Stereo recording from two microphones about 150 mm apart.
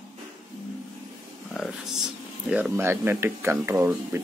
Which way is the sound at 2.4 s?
10° right (ahead or behind).